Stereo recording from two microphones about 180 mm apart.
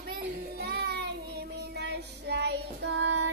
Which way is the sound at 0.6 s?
65° right (ahead or behind).